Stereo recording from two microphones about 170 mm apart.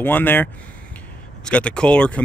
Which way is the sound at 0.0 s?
10° left (ahead or behind).